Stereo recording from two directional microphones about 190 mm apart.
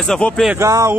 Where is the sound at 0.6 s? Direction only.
15° right (ahead or behind).